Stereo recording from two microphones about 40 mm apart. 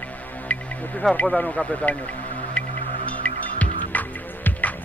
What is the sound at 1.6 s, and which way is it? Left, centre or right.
Speech, left.